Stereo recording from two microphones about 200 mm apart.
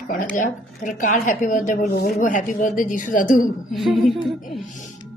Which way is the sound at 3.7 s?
Centre (ahead or behind).